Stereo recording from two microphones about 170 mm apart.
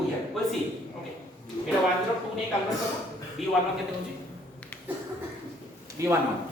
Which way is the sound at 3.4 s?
Centre (ahead or behind).